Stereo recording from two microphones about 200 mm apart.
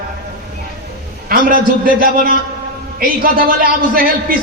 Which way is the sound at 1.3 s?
45° right (ahead or behind).